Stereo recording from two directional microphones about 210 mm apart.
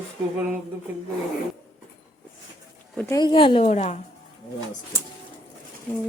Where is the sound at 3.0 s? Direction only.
15° left (ahead or behind); by 4.0 s 30° left (ahead or behind).